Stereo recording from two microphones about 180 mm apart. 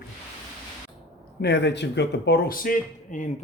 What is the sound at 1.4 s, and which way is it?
A man's voice, 70° left (ahead or behind).